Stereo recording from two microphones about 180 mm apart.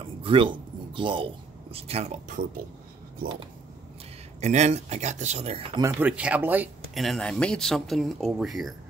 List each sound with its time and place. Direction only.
0.0 s speech: 30° right (ahead or behind); by 2.6 s 45° right (ahead or behind)
4.4 s speech: 40° right (ahead or behind)
5.8 s speech: 20° right (ahead or behind)
6.0 s speech: 5° right (ahead or behind)